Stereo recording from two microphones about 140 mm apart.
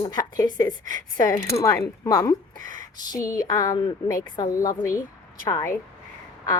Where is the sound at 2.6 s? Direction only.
70° right (ahead or behind).